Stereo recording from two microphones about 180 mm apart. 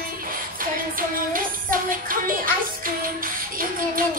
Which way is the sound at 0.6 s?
50° right (ahead or behind).